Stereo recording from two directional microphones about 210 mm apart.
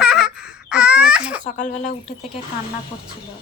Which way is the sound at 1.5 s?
35° left (ahead or behind).